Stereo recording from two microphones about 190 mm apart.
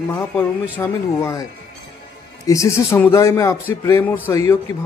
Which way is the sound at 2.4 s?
15° left (ahead or behind).